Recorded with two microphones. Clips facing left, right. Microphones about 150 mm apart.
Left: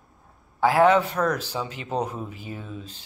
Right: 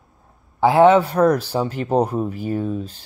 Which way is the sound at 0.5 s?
20° right (ahead or behind).